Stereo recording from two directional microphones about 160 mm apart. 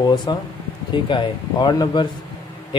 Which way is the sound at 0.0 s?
25° left (ahead or behind).